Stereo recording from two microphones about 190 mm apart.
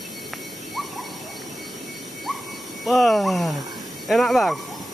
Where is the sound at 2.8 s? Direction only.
Centre (ahead or behind).